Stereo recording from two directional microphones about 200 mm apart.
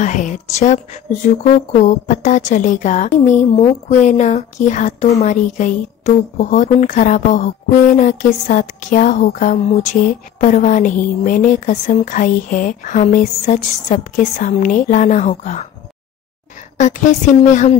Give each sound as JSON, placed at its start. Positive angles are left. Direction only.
{"t": 0.0, "sound": "a woman's voice", "side_deg": 40}
{"t": 16.7, "sound": "a woman's voice", "side_deg": 40}